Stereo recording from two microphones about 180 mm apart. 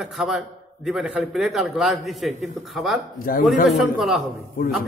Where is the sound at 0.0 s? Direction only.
Centre (ahead or behind).